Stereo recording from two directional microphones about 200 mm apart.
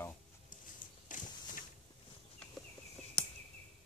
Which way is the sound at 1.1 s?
40° left (ahead or behind).